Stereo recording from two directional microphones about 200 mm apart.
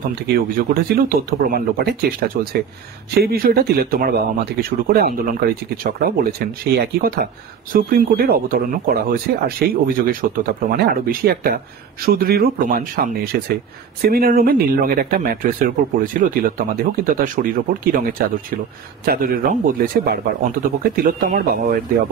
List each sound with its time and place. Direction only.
0.3 s speech: 50° right (ahead or behind)